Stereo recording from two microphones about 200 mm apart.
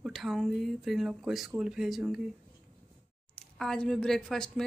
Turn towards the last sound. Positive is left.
turn(degrees=5)  # may be behind; listen again after turning